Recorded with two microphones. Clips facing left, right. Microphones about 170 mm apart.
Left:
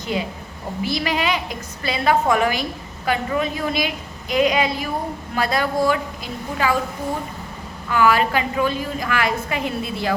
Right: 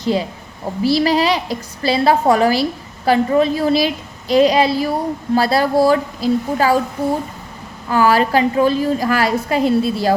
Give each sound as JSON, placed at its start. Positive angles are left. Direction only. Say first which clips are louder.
{"t": 0.0, "sound": "a woman's voice", "louder": "right 6 dB", "side_deg": -35}
{"t": 7.9, "sound": "a woman's voice", "louder": "right 3 dB", "side_deg": -35}